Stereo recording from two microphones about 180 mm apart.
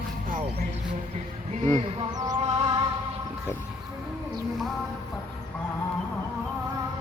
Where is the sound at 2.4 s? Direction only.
25° right (ahead or behind).